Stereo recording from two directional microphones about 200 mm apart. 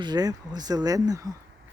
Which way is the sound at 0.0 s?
20° right (ahead or behind).